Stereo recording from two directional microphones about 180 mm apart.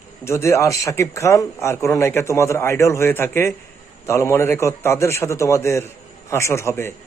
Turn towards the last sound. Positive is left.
turn(degrees=15)  # may be behind; listen again after turning